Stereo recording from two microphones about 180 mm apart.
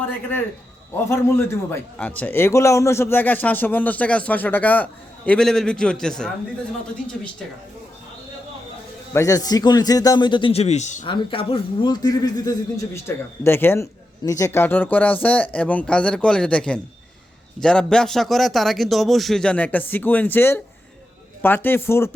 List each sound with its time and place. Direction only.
1.1 s a man's voice: 15° left (ahead or behind)
9.1 s a man's voice: 20° left (ahead or behind); by 11.0 s 40° left (ahead or behind)
11.0 s a man's voice: 30° left (ahead or behind)